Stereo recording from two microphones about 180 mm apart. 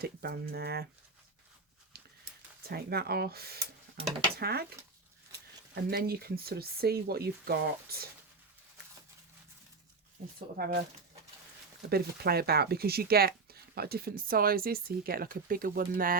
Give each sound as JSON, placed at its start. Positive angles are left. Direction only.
{"t": 0.0, "sound": "speech", "side_deg": -60}
{"t": 2.6, "sound": "speech", "side_deg": -60}
{"t": 5.7, "sound": "speech", "side_deg": -60}
{"t": 10.6, "sound": "speech", "side_deg": -60}
{"t": 11.9, "sound": "speech", "side_deg": -60}